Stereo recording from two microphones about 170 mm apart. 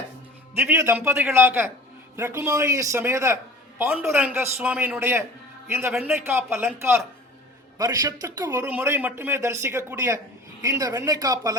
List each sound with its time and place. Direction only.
0.5 s speech: 15° right (ahead or behind)
4.4 s speech: 10° right (ahead or behind)
5.9 s a man's voice: centre (ahead or behind)
6.2 s speech: 15° right (ahead or behind)